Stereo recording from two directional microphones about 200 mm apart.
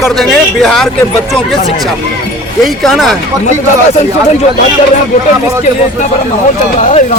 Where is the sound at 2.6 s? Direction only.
Centre (ahead or behind).